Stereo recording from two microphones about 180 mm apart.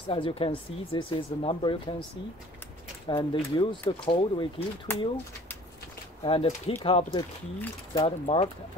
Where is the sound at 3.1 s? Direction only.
25° left (ahead or behind).